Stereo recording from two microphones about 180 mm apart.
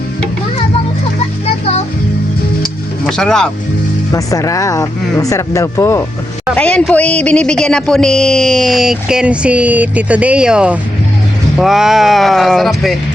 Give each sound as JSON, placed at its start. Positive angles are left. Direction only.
{"t": 3.1, "sound": "speech", "side_deg": 5}
{"t": 4.1, "sound": "speech", "side_deg": 20}